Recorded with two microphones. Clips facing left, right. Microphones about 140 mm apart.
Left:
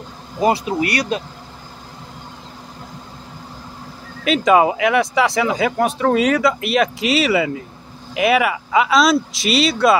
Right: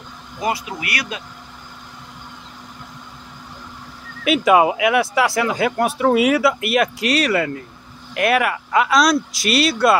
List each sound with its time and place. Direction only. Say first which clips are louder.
0.4 s speech: left 7 dB; 30° left (ahead or behind)
4.2 s speech: even; 5° right (ahead or behind)